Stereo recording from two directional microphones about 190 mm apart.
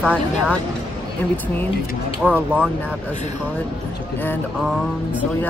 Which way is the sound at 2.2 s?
5° right (ahead or behind).